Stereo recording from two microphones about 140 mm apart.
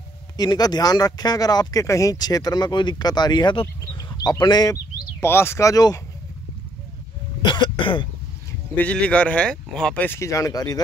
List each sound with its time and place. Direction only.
0.4 s speech: 30° left (ahead or behind)
5.2 s speech: 15° left (ahead or behind)
7.4 s speech: 30° left (ahead or behind)
8.5 s speech: 10° left (ahead or behind); by 10.8 s 25° left (ahead or behind)